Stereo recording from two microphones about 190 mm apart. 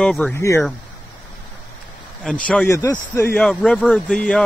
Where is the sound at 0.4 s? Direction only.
15° left (ahead or behind).